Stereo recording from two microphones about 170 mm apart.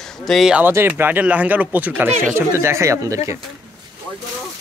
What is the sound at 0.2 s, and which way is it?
Speech, centre (ahead or behind).